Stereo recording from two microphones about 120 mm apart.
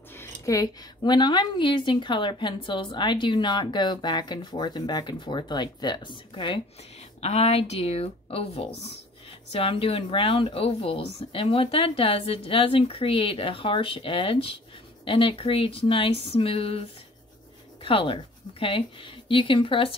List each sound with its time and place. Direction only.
0.1 s a sound: 20° left (ahead or behind)
0.6 s a woman's voice: 40° left (ahead or behind)
7.2 s speech: 60° left (ahead or behind)
17.8 s speech: 45° left (ahead or behind)